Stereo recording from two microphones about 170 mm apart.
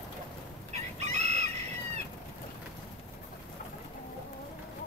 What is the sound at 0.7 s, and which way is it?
Chicken, 40° right (ahead or behind).